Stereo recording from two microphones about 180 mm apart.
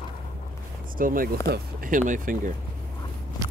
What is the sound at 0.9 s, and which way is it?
Speech, 50° right (ahead or behind).